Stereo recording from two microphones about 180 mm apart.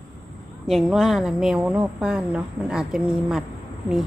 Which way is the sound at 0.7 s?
Centre (ahead or behind).